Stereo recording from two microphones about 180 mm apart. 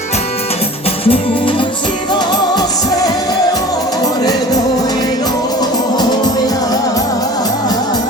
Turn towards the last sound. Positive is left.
turn(degrees=20)  # may be behind; listen again after turning